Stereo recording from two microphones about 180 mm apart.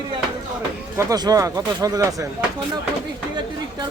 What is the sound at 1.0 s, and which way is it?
Speech, 20° right (ahead or behind).